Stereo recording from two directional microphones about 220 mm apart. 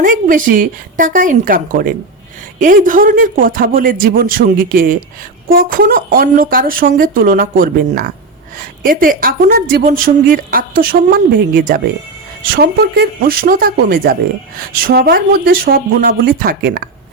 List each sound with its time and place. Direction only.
0.0 s a woman's voice: 40° right (ahead or behind)